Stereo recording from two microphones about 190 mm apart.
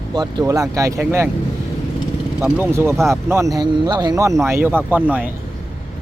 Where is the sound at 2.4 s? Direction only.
10° right (ahead or behind).